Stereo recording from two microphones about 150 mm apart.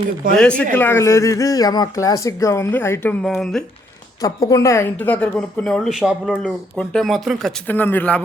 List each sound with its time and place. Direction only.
0.3 s speech: 5° left (ahead or behind)
3.2 s speech: centre (ahead or behind)
4.2 s speech: 25° left (ahead or behind); by 6.4 s 5° right (ahead or behind)
6.4 s speech: 5° left (ahead or behind)
7.7 s speech: 10° left (ahead or behind)